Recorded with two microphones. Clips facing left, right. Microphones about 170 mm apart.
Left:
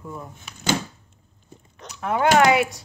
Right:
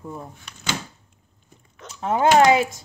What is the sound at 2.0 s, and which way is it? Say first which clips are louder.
Speech: right 2 dB; 30° right (ahead or behind).